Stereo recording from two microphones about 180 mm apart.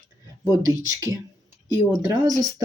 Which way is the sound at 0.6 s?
20° right (ahead or behind).